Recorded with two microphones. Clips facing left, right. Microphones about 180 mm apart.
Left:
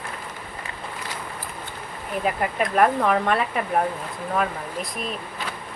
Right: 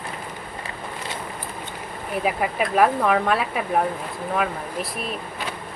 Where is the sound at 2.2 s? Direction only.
5° right (ahead or behind).